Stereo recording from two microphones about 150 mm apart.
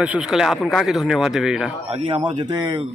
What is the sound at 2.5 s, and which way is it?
Speech, 30° right (ahead or behind).